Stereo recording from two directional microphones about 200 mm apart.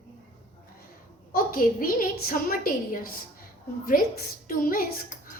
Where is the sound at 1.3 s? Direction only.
45° left (ahead or behind).